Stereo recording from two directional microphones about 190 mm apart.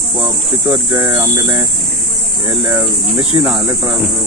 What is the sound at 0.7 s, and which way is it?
Speech, 20° right (ahead or behind).